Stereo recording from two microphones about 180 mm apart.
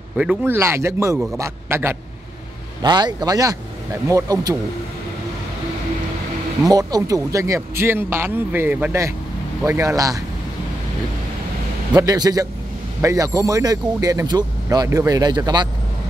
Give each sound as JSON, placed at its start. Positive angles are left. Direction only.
{"t": 0.2, "sound": "a man's voice", "side_deg": -5}
{"t": 6.6, "sound": "a man's voice", "side_deg": -20}
{"t": 11.9, "sound": "speech", "side_deg": -20}